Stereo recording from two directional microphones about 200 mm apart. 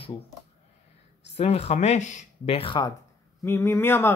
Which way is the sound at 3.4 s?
15° left (ahead or behind).